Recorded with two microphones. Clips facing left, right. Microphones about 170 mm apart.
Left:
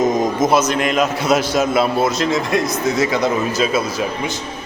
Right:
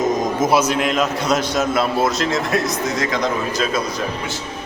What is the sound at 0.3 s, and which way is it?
A man's voice, 10° right (ahead or behind).